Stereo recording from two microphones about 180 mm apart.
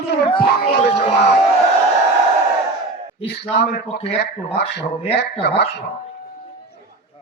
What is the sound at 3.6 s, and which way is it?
A man's voice, 60° left (ahead or behind).